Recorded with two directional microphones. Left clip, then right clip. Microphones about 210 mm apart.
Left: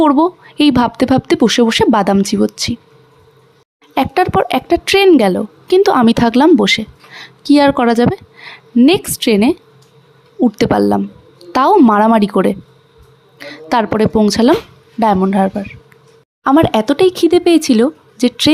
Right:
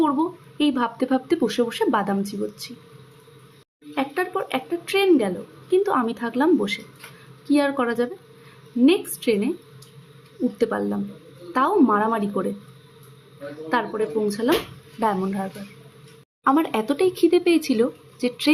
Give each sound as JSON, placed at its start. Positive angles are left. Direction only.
{"t": 0.0, "sound": "a woman's voice", "side_deg": 45}
{"t": 3.9, "sound": "a woman's voice", "side_deg": 50}
{"t": 10.6, "sound": "a woman's voice", "side_deg": 50}
{"t": 13.7, "sound": "a woman's voice", "side_deg": 50}